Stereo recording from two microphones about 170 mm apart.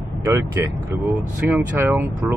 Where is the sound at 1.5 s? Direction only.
15° right (ahead or behind).